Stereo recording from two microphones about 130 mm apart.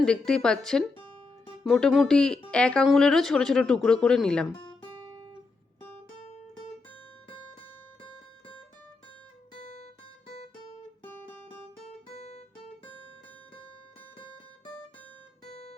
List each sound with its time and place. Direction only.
0.0 s speech: 5° left (ahead or behind)
12.1 s guitar: 55° left (ahead or behind)
15.4 s guitar: 55° left (ahead or behind)